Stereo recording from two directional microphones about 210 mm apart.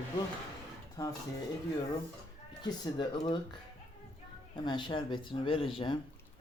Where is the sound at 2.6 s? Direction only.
20° left (ahead or behind).